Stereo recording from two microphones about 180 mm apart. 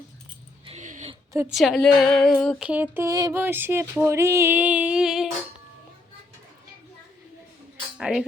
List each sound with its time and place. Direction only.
0.6 s dog: 40° right (ahead or behind)
1.5 s a sound: centre (ahead or behind)
7.9 s speech: 5° right (ahead or behind)